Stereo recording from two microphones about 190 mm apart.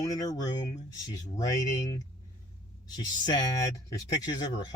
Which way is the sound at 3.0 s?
20° left (ahead or behind).